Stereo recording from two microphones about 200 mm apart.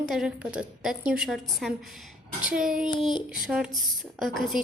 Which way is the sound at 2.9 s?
25° left (ahead or behind).